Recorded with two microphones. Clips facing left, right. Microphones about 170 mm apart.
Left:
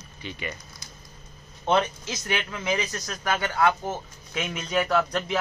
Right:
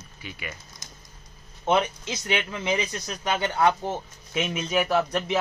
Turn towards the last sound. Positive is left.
turn(degrees=-20)  # may be behind; listen again after turning